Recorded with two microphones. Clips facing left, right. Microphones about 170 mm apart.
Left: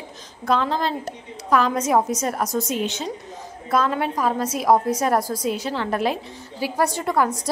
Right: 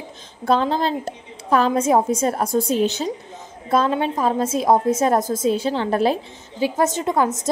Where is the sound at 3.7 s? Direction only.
25° right (ahead or behind).